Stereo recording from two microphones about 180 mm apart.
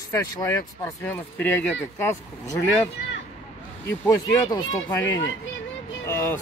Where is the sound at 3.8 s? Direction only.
15° left (ahead or behind).